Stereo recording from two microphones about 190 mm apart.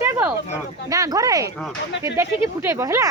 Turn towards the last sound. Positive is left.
turn(degrees=-15)  # may be behind; listen again after turning